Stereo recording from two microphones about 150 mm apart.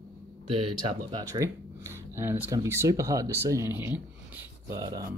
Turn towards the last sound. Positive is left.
turn(degrees=-20)  # may be behind; listen again after turning